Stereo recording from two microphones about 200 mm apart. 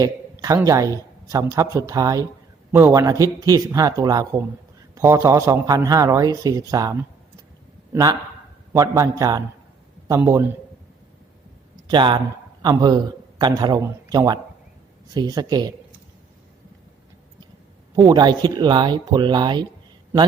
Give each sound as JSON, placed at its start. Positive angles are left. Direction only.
{"t": 0.0, "sound": "a man's voice", "side_deg": -15}
{"t": 8.7, "sound": "speech", "side_deg": -15}
{"t": 11.9, "sound": "speech", "side_deg": -20}
{"t": 17.9, "sound": "speech", "side_deg": -20}